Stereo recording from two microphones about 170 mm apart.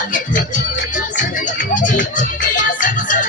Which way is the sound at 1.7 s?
50° left (ahead or behind).